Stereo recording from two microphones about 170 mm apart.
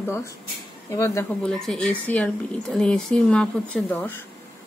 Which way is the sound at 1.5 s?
5° left (ahead or behind).